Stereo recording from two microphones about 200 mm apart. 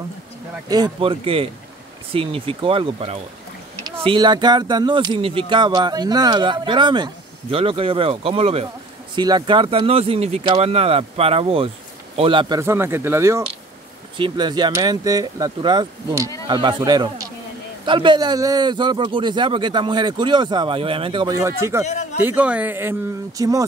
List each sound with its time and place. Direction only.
0.7 s a man's voice: 20° right (ahead or behind)
3.7 s boat: 15° right (ahead or behind)
4.0 s a man's voice: 25° right (ahead or behind)